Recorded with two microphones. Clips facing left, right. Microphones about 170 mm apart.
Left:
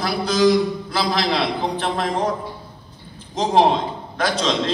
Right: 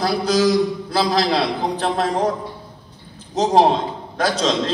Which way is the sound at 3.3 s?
40° right (ahead or behind).